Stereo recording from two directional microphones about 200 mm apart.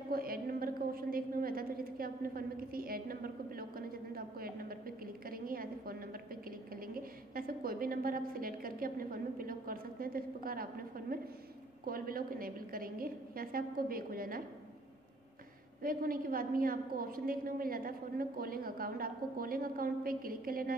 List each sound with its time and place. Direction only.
0.1 s a sound: 45° right (ahead or behind)
11.8 s a woman's voice: 45° right (ahead or behind)
15.8 s a woman's voice: 45° right (ahead or behind)